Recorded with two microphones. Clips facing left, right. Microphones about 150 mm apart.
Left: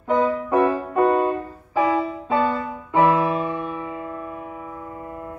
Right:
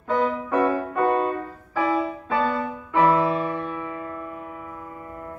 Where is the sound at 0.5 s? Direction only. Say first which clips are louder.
Left 2 dB; 25° left (ahead or behind).